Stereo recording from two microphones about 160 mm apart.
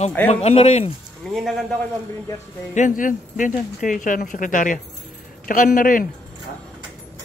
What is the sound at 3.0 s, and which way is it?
Speech, 55° left (ahead or behind).